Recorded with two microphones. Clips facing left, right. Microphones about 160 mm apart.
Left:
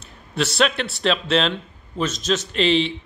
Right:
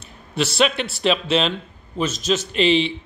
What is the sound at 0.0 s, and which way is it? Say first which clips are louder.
A man's voice: right 1 dB; centre (ahead or behind).